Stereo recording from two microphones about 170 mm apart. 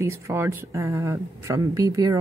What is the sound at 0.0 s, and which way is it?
A woman's voice, 15° right (ahead or behind).